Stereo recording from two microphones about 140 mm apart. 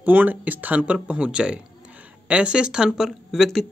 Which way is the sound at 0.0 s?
10° right (ahead or behind).